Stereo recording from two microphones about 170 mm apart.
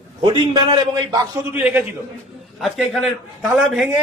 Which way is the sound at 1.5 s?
10° right (ahead or behind).